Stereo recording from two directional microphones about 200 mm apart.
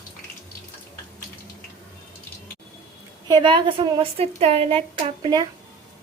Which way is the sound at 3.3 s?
20° right (ahead or behind).